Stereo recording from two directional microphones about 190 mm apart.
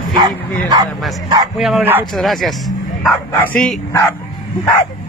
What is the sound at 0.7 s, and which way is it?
Speech, 20° right (ahead or behind).